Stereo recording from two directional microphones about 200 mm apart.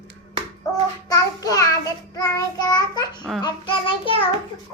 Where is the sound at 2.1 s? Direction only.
20° left (ahead or behind).